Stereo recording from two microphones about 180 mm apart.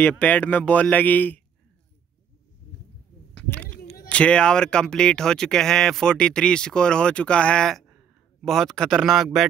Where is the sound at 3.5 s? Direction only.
10° left (ahead or behind).